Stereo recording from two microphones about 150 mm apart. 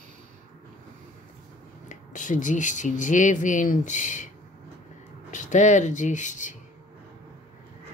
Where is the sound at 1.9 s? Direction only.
60° left (ahead or behind).